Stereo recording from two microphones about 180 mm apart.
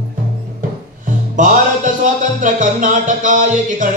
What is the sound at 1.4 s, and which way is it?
Music, 45° right (ahead or behind).